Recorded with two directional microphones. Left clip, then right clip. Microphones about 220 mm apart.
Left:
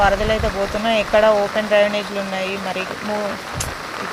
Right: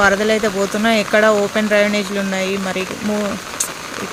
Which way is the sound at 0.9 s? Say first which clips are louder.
Right 1 dB; 35° right (ahead or behind).